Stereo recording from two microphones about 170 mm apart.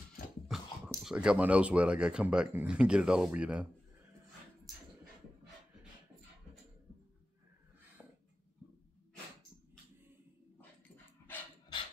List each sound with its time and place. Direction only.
0.5 s speech: 5° right (ahead or behind)